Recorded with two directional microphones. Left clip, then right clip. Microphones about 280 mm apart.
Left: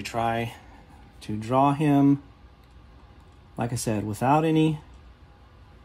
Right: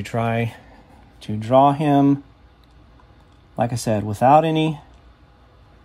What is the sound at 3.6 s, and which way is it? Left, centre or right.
Speech, right.